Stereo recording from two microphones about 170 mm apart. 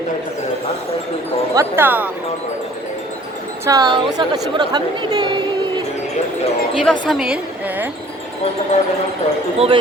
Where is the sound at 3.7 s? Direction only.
25° right (ahead or behind).